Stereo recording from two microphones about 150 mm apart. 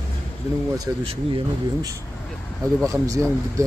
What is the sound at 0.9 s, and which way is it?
Speech, 20° right (ahead or behind).